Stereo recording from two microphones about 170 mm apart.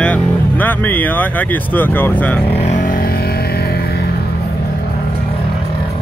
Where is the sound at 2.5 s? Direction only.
45° left (ahead or behind); by 3.9 s 65° left (ahead or behind).